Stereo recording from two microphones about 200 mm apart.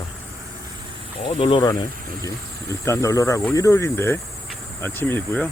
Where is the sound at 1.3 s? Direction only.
25° left (ahead or behind).